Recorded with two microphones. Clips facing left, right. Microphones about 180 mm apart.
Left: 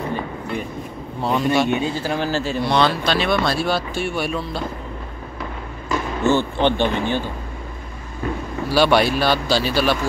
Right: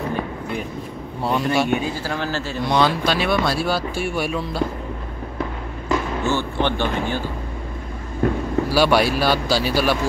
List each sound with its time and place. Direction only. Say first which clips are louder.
1.2 s speech: left 1 dB; 10° right (ahead or behind)
1.7 s speech: left 1 dB; 15° left (ahead or behind)
2.6 s speech: right 1 dB; 15° right (ahead or behind)
6.3 s speech: left 4 dB; 20° left (ahead or behind)
8.2 s speech: right 5 dB; 55° right (ahead or behind)
8.7 s speech: left 2 dB; 5° right (ahead or behind)